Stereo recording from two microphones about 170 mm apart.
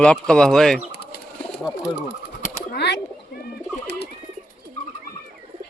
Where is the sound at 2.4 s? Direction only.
50° left (ahead or behind).